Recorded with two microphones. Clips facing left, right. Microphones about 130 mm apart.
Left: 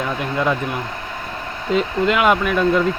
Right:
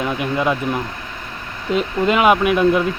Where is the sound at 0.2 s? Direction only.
15° right (ahead or behind).